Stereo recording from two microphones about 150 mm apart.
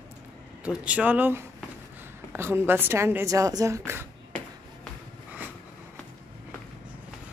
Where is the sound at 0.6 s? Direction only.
10° right (ahead or behind).